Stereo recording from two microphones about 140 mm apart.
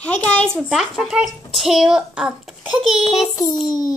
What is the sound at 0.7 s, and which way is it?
A child's voice, centre (ahead or behind).